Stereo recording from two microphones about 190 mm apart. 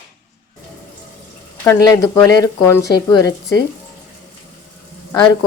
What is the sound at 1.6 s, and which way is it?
Speech, 15° left (ahead or behind).